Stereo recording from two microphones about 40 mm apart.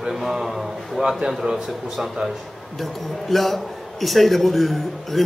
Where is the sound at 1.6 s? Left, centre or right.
Centre.